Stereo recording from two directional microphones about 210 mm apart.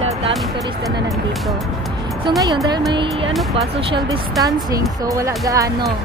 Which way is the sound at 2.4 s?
20° right (ahead or behind).